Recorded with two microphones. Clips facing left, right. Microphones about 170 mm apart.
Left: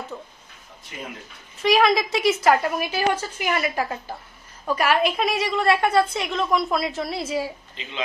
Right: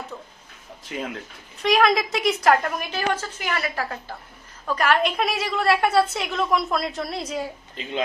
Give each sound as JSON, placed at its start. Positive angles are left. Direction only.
{"t": 0.9, "sound": "speech", "side_deg": -80}
{"t": 1.6, "sound": "a woman's voice", "side_deg": 0}